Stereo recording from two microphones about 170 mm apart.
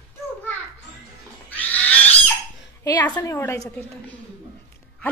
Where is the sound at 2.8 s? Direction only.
25° left (ahead or behind).